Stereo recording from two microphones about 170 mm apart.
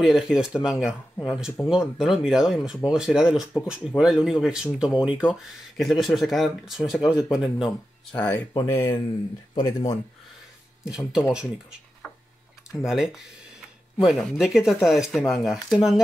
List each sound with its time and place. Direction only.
0.0 s speech: 5° right (ahead or behind)
8.5 s speech: 20° left (ahead or behind)
10.9 s speech: 5° right (ahead or behind)
12.8 s speech: centre (ahead or behind)